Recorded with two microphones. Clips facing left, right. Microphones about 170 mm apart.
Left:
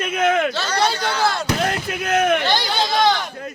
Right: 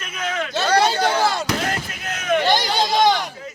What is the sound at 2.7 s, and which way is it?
Speech, 15° right (ahead or behind).